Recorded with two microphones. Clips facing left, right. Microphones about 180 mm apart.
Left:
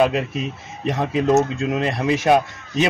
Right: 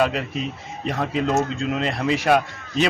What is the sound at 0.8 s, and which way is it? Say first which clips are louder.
A man's voice: left 4 dB; 20° left (ahead or behind).